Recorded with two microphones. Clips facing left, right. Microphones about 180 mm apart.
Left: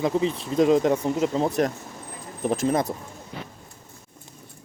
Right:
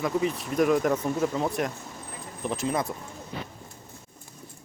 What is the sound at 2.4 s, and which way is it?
Speech, 45° left (ahead or behind).